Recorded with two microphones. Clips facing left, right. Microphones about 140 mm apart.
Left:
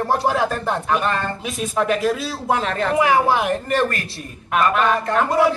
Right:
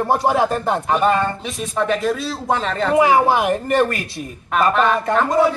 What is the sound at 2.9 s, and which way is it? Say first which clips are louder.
Speech: right 3 dB; 20° right (ahead or behind).